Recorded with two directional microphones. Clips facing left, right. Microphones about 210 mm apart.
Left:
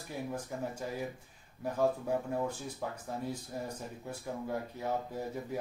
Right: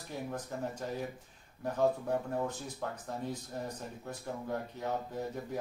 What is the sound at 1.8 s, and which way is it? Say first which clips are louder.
Speech: even; 10° left (ahead or behind).